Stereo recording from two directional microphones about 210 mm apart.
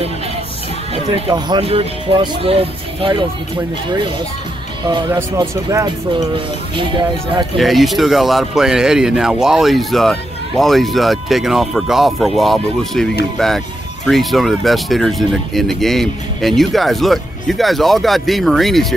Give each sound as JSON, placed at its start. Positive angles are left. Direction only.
{"t": 1.1, "sound": "speech", "side_deg": -25}
{"t": 4.9, "sound": "speech", "side_deg": -20}
{"t": 7.5, "sound": "speech", "side_deg": 0}